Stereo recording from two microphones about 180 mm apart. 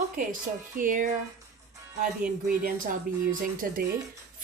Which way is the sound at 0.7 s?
50° right (ahead or behind).